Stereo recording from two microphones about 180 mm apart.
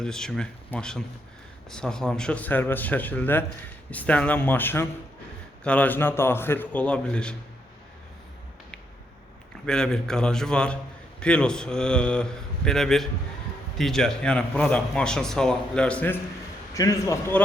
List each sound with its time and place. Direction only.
0.0 s a man's voice: 5° left (ahead or behind)
9.6 s a man's voice: 5° left (ahead or behind)